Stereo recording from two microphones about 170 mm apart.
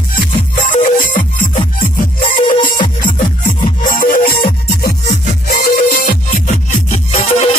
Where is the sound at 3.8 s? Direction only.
55° left (ahead or behind).